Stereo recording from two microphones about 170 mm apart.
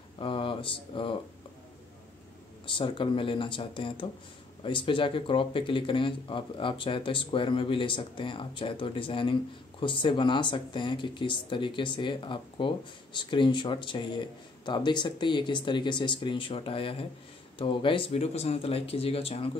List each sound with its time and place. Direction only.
0.2 s speech: 30° left (ahead or behind)
2.6 s speech: 30° left (ahead or behind)